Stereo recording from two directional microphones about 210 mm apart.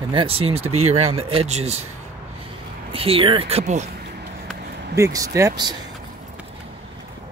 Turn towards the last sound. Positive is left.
turn(degrees=-15)  # may be behind; listen again after turning